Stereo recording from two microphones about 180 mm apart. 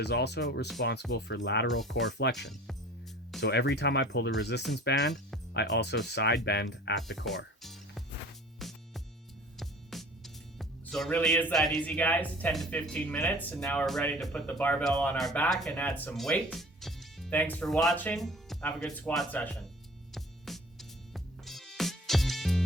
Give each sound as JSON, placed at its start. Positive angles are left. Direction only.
{"t": 0.0, "sound": "speech", "side_deg": 65}
{"t": 2.0, "sound": "speech", "side_deg": 70}
{"t": 3.4, "sound": "speech", "side_deg": 75}
{"t": 6.9, "sound": "speech", "side_deg": 0}
{"t": 7.6, "sound": "music", "side_deg": 0}
{"t": 9.6, "sound": "speech", "side_deg": 0}
{"t": 20.1, "sound": "music", "side_deg": 0}